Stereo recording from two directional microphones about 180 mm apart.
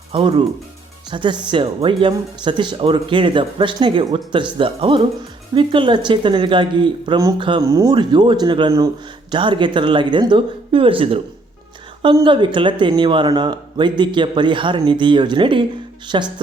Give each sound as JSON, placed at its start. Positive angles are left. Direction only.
{"t": 0.1, "sound": "speech", "side_deg": -30}